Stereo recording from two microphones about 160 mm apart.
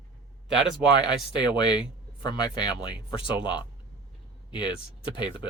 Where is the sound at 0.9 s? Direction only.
30° left (ahead or behind).